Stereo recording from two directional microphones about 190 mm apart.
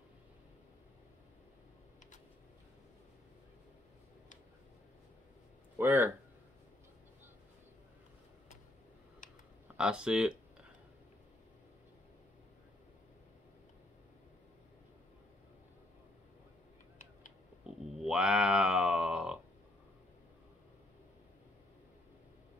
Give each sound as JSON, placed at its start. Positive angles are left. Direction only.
{"t": 5.8, "sound": "speech", "side_deg": -10}
{"t": 9.8, "sound": "speech", "side_deg": -5}
{"t": 17.9, "sound": "a sound", "side_deg": -5}